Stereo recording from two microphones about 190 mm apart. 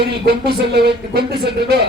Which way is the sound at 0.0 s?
60° right (ahead or behind).